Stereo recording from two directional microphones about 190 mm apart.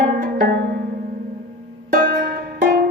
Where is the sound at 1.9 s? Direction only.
50° right (ahead or behind).